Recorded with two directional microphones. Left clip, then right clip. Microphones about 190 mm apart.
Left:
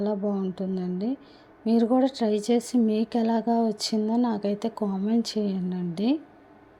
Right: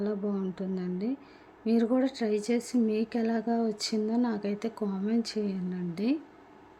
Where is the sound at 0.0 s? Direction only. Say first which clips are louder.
Left 5 dB; 10° left (ahead or behind).